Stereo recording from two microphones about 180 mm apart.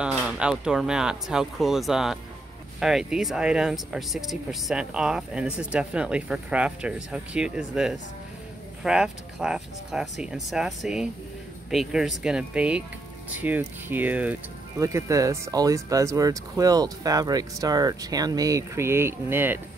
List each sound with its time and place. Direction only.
0.0 s speech: 5° right (ahead or behind)